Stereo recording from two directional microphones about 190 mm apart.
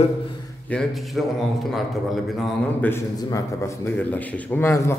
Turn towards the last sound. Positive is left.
turn(degrees=15)  # may be behind; listen again after turning